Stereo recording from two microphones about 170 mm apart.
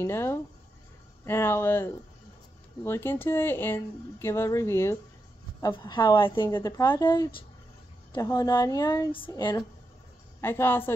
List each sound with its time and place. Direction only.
0.0 s a woman's voice: 15° left (ahead or behind)
10.4 s speech: 15° left (ahead or behind)